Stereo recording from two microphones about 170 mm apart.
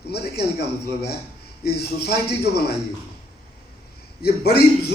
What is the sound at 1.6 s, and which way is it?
A man's voice, 70° left (ahead or behind).